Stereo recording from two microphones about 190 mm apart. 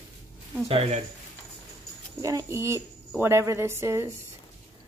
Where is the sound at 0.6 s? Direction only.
30° right (ahead or behind).